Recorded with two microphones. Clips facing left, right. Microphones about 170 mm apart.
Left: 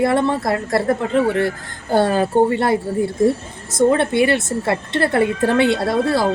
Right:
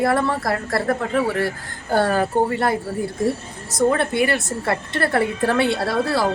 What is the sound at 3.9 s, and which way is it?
A woman's voice, 20° left (ahead or behind).